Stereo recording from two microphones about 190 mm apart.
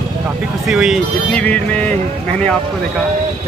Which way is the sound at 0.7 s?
Centre (ahead or behind).